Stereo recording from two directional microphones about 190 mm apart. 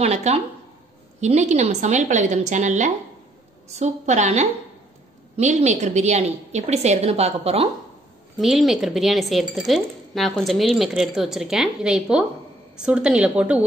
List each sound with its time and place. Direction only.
0.0 s a woman's voice: 35° right (ahead or behind)
8.4 s speech: centre (ahead or behind)